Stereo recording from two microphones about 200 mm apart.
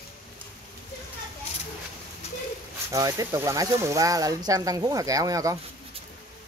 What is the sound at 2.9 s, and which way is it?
Speech, 15° right (ahead or behind).